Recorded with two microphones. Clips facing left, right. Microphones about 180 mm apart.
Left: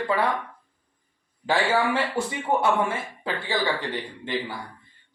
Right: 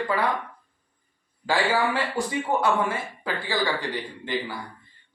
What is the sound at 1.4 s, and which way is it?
A man's voice, 25° left (ahead or behind).